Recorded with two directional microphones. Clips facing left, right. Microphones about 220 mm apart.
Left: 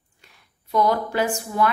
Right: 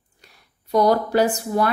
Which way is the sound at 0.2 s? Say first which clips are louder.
Right 2 dB; 35° right (ahead or behind).